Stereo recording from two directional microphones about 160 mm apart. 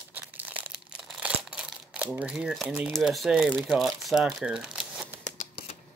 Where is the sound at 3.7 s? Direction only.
Centre (ahead or behind).